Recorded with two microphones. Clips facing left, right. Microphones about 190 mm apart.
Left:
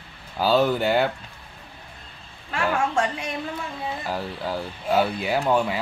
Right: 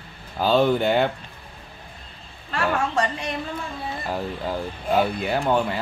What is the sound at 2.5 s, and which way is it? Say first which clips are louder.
A woman's voice: even; 5° left (ahead or behind).